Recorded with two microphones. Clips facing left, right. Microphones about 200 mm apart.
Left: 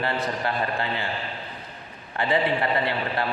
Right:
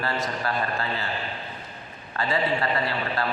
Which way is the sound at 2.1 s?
15° left (ahead or behind).